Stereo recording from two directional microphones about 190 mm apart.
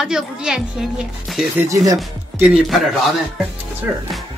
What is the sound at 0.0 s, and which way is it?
A woman's voice, centre (ahead or behind).